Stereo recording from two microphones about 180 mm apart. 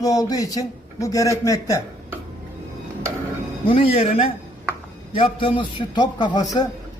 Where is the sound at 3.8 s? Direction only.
35° left (ahead or behind).